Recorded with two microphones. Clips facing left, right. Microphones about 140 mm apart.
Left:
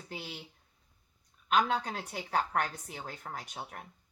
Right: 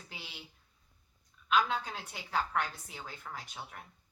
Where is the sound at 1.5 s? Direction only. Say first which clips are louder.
Left 2 dB; 45° left (ahead or behind).